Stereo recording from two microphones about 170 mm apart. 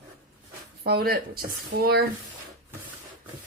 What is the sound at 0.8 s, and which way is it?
Speech, 65° right (ahead or behind).